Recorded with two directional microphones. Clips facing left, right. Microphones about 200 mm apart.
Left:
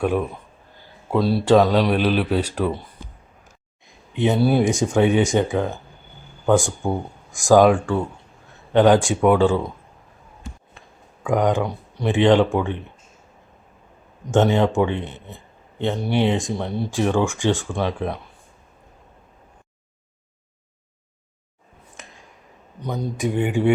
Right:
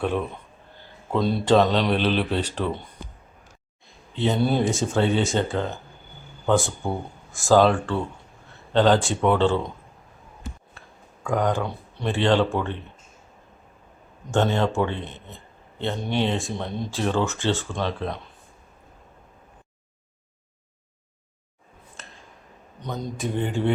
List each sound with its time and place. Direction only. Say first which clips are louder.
0.0 s speech: left 4 dB; 10° left (ahead or behind)
4.1 s speech: left 4 dB; 15° left (ahead or behind)
10.8 s speech: left 1 dB; 15° left (ahead or behind)
14.3 s speech: left 5 dB; 15° left (ahead or behind)
22.0 s a sound: left 3 dB; 15° left (ahead or behind)
22.8 s speech: left 5 dB; 10° left (ahead or behind)